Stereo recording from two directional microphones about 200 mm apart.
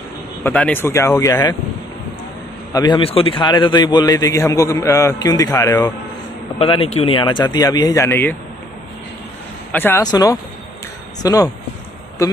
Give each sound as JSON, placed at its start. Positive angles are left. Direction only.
{"t": 0.4, "sound": "speech", "side_deg": 10}
{"t": 2.7, "sound": "a man's voice", "side_deg": 20}
{"t": 9.7, "sound": "speech", "side_deg": 10}